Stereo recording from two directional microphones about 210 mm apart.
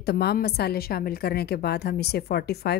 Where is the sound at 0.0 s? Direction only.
50° left (ahead or behind).